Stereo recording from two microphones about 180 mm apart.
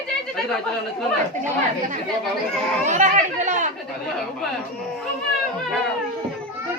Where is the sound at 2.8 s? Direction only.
40° right (ahead or behind).